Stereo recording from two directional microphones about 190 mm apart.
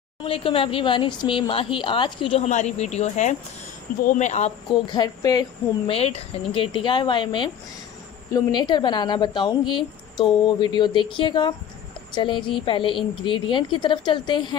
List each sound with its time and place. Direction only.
0.2 s speech: 30° left (ahead or behind)
4.6 s speech: 20° left (ahead or behind)
5.9 s a woman's voice: 35° left (ahead or behind)